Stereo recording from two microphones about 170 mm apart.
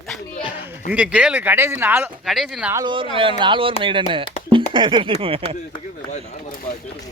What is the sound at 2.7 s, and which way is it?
Speech, 25° right (ahead or behind).